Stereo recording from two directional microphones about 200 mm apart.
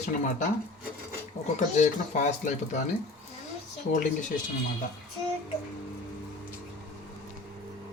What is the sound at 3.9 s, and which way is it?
Speech, 45° left (ahead or behind).